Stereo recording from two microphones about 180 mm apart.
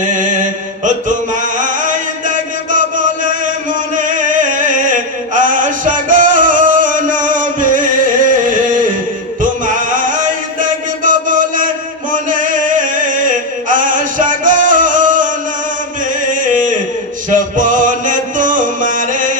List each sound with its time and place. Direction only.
0.1 s mantra: 45° right (ahead or behind)
0.9 s chant: 45° right (ahead or behind)
12.1 s music: 45° right (ahead or behind)
16.3 s a sound: 45° right (ahead or behind)
17.2 s music: 45° right (ahead or behind)